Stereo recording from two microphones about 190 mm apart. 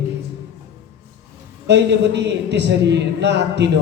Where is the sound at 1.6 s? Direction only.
65° right (ahead or behind).